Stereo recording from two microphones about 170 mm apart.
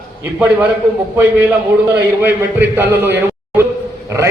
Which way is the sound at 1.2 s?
10° right (ahead or behind).